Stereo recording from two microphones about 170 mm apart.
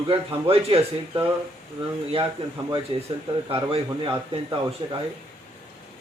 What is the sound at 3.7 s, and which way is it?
Speech, 35° right (ahead or behind).